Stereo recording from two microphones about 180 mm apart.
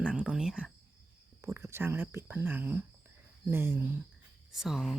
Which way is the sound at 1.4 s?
15° right (ahead or behind).